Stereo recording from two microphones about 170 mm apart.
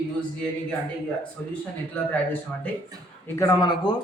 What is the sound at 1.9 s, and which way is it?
Speech, 10° left (ahead or behind).